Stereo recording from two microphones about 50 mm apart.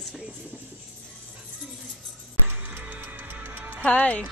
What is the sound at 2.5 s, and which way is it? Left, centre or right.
Music, right.